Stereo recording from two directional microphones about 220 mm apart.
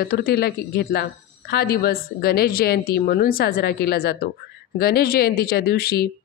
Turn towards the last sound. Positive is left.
turn(degrees=45)  # may be behind; listen again after turning